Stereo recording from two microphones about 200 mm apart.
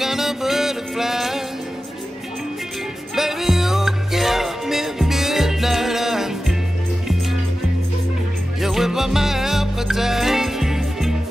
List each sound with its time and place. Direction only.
0.0 s music: centre (ahead or behind)
3.2 s music: centre (ahead or behind)
8.5 s music: centre (ahead or behind)